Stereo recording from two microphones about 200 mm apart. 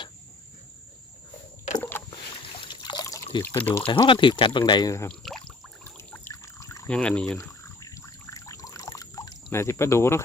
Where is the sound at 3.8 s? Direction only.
25° left (ahead or behind).